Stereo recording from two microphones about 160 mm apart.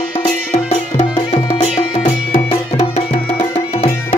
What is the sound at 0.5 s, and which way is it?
Music, 40° left (ahead or behind).